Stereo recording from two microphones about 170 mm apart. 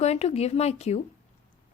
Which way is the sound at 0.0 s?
40° left (ahead or behind).